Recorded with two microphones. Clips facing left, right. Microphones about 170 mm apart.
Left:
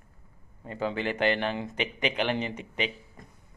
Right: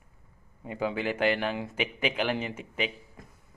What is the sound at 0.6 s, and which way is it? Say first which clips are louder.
Speech: even; 10° right (ahead or behind).